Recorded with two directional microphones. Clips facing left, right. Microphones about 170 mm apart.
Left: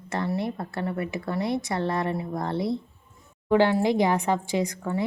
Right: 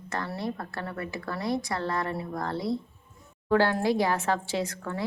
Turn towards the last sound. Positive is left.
turn(degrees=15)  # may be behind; listen again after turning